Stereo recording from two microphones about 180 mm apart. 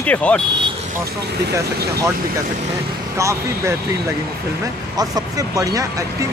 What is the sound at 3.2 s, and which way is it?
Speech, 15° right (ahead or behind).